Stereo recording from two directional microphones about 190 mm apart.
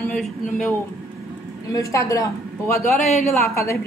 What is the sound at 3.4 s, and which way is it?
Speech, 15° left (ahead or behind).